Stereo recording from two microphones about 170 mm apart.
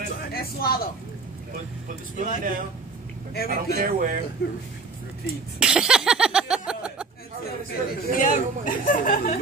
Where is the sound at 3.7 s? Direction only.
55° right (ahead or behind).